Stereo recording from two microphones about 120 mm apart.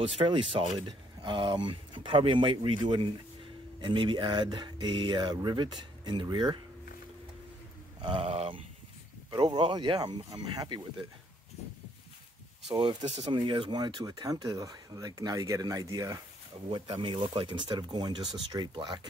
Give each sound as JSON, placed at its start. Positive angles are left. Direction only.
{"t": 0.0, "sound": "speech", "side_deg": -45}
{"t": 8.0, "sound": "speech", "side_deg": -50}
{"t": 9.3, "sound": "speech", "side_deg": -40}
{"t": 13.3, "sound": "speech", "side_deg": -40}
{"t": 16.7, "sound": "speech", "side_deg": -40}